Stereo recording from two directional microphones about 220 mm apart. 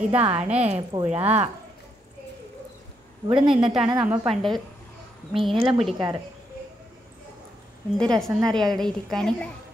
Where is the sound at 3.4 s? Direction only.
5° right (ahead or behind).